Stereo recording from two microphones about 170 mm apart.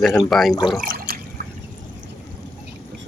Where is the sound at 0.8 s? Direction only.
60° right (ahead or behind).